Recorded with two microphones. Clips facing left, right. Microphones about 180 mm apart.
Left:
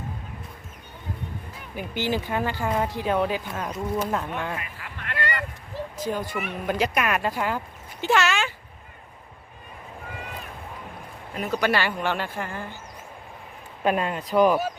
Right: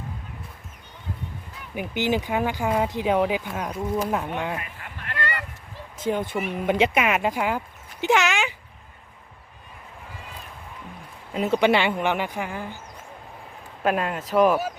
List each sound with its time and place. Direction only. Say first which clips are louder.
1.7 s speech: right 3 dB; 15° right (ahead or behind)
6.0 s speech: right 4 dB; 25° right (ahead or behind)
8.0 s a sound: right 1 dB; 15° right (ahead or behind)
11.3 s speech: right 4 dB; 25° right (ahead or behind)
13.8 s speech: even; centre (ahead or behind)